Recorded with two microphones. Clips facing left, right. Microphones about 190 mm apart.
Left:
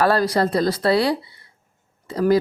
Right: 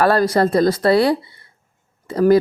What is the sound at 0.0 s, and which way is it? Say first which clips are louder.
Speech: right 3 dB; 50° right (ahead or behind).